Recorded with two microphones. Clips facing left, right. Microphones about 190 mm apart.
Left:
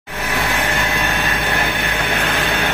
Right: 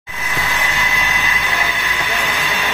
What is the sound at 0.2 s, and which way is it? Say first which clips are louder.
Vehicle: left 3 dB; 60° left (ahead or behind).